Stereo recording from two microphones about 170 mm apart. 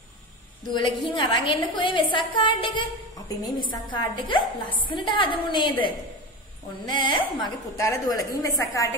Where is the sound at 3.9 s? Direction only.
30° left (ahead or behind).